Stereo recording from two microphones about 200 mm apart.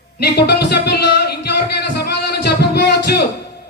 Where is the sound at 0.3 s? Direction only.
55° left (ahead or behind).